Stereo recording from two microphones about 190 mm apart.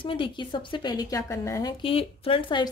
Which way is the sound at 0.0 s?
25° left (ahead or behind).